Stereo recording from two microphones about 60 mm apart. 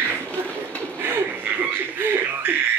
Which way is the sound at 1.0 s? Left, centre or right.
Right.